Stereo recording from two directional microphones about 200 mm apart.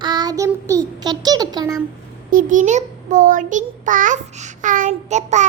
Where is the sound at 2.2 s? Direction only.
40° right (ahead or behind).